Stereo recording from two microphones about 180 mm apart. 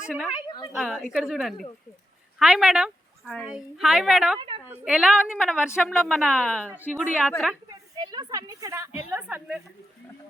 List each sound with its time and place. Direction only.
0.1 s a woman's voice: 5° left (ahead or behind)
4.4 s a woman's voice: 30° right (ahead or behind)
4.7 s a woman's voice: 5° right (ahead or behind)
7.7 s a woman's voice: 25° right (ahead or behind)